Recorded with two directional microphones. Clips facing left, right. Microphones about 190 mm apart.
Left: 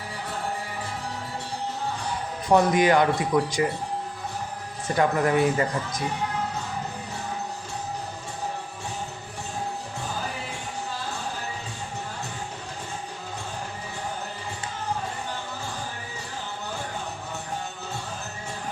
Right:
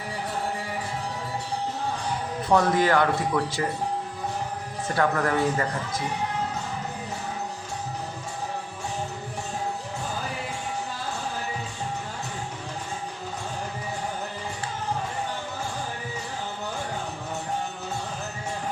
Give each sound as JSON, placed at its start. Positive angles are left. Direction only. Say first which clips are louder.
{"t": 2.5, "sound": "speech", "louder": "left 2 dB", "side_deg": 15}
{"t": 4.9, "sound": "speech", "louder": "left 2 dB", "side_deg": 15}